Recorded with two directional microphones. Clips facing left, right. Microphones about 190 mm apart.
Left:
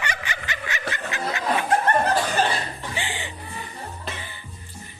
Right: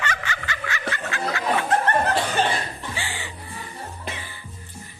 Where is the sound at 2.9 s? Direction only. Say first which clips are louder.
Left 4 dB; 20° left (ahead or behind).